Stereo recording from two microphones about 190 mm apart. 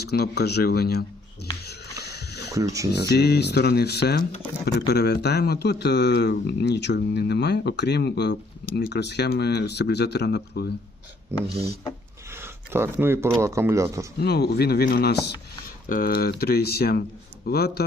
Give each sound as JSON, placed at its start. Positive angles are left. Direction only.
{"t": 0.0, "sound": "speech", "side_deg": 55}
{"t": 1.6, "sound": "a sound", "side_deg": 60}
{"t": 2.5, "sound": "speech", "side_deg": -15}
{"t": 3.1, "sound": "speech", "side_deg": 60}
{"t": 11.3, "sound": "speech", "side_deg": -15}
{"t": 14.2, "sound": "speech", "side_deg": 60}